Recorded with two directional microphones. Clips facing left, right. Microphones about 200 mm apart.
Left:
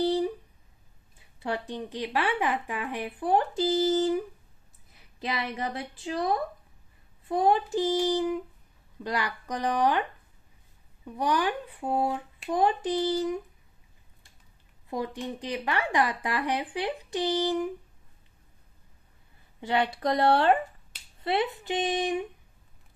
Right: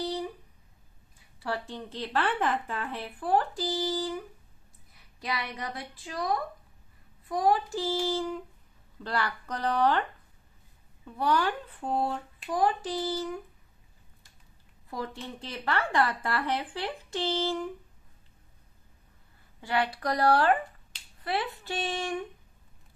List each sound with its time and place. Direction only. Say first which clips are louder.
1.4 s speech: left 3 dB; 20° left (ahead or behind)
5.2 s speech: left 3 dB; 25° left (ahead or behind)
11.1 s speech: even; 15° left (ahead or behind)
12.4 s speech: left 2 dB; 20° left (ahead or behind)
14.9 s speech: left 5 dB; 15° left (ahead or behind)
19.6 s speech: left 3 dB; 25° left (ahead or behind)